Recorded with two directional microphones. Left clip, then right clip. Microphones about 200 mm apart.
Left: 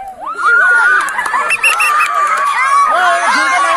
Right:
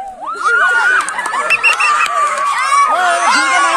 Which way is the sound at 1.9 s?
50° right (ahead or behind).